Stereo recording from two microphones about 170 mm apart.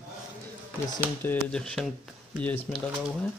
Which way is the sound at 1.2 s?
10° left (ahead or behind).